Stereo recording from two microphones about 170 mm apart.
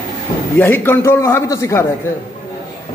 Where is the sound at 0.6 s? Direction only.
15° left (ahead or behind).